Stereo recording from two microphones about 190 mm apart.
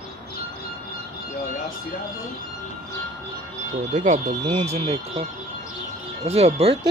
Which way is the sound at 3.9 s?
40° right (ahead or behind).